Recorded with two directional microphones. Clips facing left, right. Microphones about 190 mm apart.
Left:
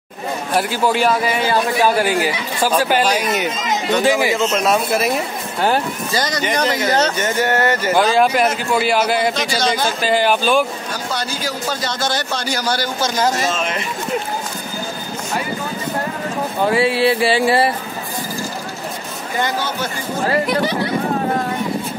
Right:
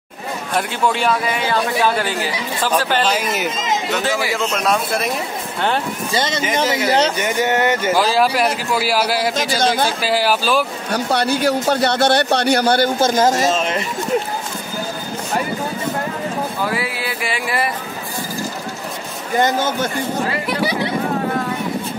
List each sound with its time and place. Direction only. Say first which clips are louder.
0.6 s a man's voice: left 2 dB; 5° left (ahead or behind)
4.4 s a man's voice: left 2 dB; 5° left (ahead or behind)
6.1 s speech: right 1 dB; 25° right (ahead or behind)
6.4 s a man's voice: even; 5° right (ahead or behind)
7.2 s speech: even; 15° right (ahead or behind)
7.9 s a man's voice: left 4 dB; 5° right (ahead or behind)
9.6 s a man's voice: right 3 dB; 55° right (ahead or behind)
9.8 s a man's voice: left 1 dB; 5° right (ahead or behind)
10.9 s a man's voice: right 6 dB; 65° right (ahead or behind)
16.6 s a sound: left 8 dB; 30° left (ahead or behind)
19.4 s speech: right 4 dB; 50° right (ahead or behind)